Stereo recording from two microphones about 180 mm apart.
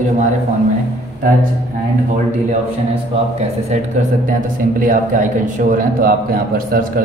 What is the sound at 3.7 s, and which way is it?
Speech, 45° right (ahead or behind).